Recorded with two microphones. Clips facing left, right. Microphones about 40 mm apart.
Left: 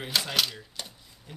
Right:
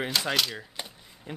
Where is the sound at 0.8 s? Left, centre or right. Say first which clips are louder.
Left 1 dB; right.